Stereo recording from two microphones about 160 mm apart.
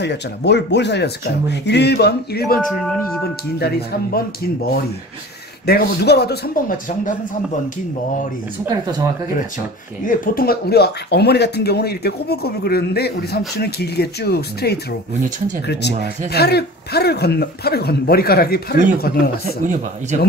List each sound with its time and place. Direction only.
0.0 s speech: 90° left; by 2.6 s 75° left (ahead or behind)
3.5 s speech: 85° left
5.7 s speech: 75° left (ahead or behind); by 7.2 s 60° left (ahead or behind)
10.0 s speech: 60° left (ahead or behind)
19.6 s speech: 55° right (ahead or behind)